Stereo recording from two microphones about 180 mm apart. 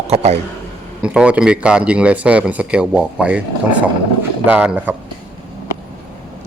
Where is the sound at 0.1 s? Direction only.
35° right (ahead or behind).